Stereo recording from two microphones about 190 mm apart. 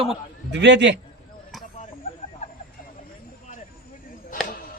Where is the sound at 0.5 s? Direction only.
65° right (ahead or behind).